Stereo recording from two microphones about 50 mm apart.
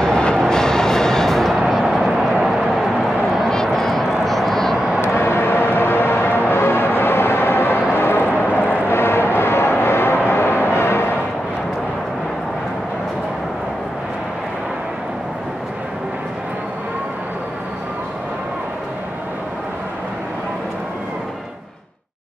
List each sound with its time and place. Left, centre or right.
0.0 s a sound: centre
0.4 s music: centre
1.6 s music: centre
2.4 s vehicle: centre
3.4 s a sound: centre
4.1 s vehicle: centre
4.7 s vehicle: centre
5.0 s vehicle: left
7.9 s a sound: left
8.8 s music: left